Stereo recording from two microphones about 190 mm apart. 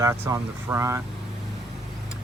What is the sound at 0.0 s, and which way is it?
Speech, 15° right (ahead or behind).